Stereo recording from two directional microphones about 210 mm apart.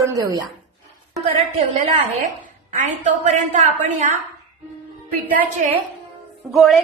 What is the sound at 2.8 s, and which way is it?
Speech, 35° right (ahead or behind).